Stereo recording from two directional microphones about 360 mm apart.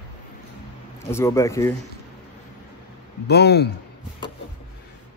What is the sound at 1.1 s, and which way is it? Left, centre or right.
Speech, centre.